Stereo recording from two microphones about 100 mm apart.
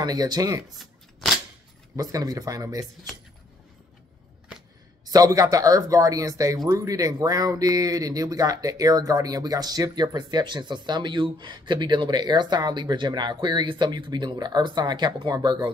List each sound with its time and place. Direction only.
0.0 s speech: 40° right (ahead or behind)
2.0 s speech: 40° right (ahead or behind)
5.0 s speech: 35° right (ahead or behind)